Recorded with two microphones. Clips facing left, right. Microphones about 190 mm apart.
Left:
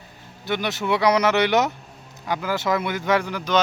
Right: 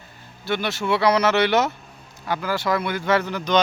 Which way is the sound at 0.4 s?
15° left (ahead or behind).